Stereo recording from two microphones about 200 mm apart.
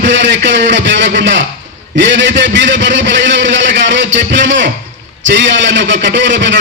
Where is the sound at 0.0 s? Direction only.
65° right (ahead or behind).